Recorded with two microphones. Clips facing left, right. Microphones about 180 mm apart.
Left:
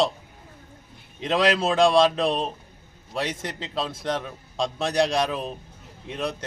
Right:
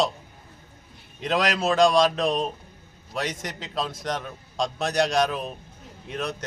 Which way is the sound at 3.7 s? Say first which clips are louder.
Left 1 dB; centre (ahead or behind).